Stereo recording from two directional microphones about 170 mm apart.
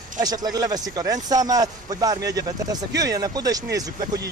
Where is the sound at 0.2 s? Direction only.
25° right (ahead or behind).